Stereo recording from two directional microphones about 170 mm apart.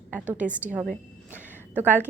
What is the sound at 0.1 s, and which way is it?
A woman's voice, 10° right (ahead or behind).